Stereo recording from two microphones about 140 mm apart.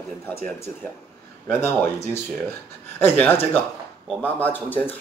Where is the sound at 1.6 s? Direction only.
15° left (ahead or behind).